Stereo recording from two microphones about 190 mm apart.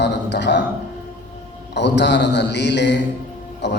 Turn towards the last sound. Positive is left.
turn(degrees=65)  # may be behind; listen again after turning